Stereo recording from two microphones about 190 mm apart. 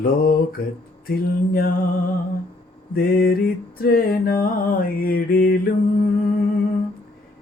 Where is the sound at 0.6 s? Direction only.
50° left (ahead or behind).